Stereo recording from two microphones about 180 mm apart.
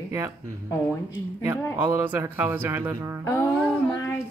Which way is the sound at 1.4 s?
10° right (ahead or behind).